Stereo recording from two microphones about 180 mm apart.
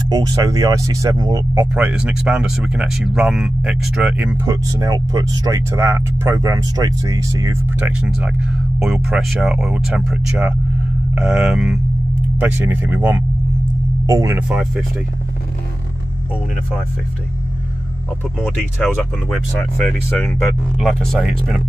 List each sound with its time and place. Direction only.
0.1 s speech: 20° right (ahead or behind)
8.0 s speech: 5° right (ahead or behind)
14.5 s speech: 5° right (ahead or behind)
18.4 s speech: 5° right (ahead or behind)